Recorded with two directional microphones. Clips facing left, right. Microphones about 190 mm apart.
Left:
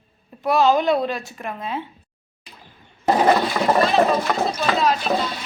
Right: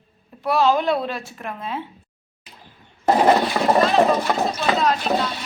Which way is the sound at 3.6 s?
25° right (ahead or behind).